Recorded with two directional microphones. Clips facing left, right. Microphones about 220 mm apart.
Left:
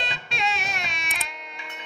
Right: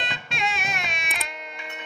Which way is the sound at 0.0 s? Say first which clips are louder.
Even; 50° right (ahead or behind).